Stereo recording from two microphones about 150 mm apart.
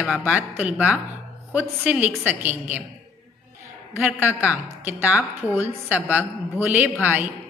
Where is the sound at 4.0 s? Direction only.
5° right (ahead or behind).